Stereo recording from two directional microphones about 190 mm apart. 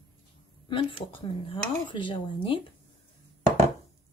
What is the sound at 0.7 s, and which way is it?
Speech, 25° left (ahead or behind).